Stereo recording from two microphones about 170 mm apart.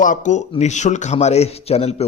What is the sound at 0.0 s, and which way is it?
A man's voice, 50° left (ahead or behind).